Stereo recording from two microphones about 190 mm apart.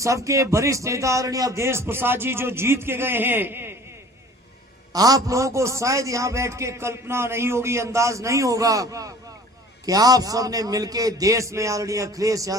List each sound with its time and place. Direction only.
0.0 s a man's voice: 15° right (ahead or behind)
4.9 s a man's voice: 20° right (ahead or behind)